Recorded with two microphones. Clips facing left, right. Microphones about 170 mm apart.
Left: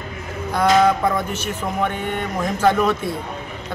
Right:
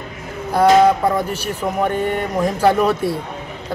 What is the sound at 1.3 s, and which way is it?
Speech, 35° right (ahead or behind).